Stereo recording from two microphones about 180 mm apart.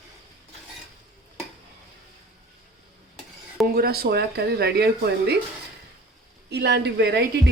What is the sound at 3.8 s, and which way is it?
A woman's voice, 60° right (ahead or behind).